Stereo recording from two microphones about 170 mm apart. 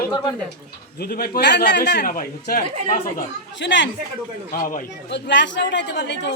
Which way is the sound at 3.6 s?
90° left.